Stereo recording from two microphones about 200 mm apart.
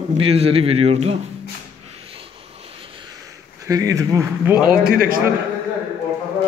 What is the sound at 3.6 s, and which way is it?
Speech, 15° right (ahead or behind).